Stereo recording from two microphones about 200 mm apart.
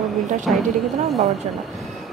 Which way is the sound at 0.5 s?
Centre (ahead or behind).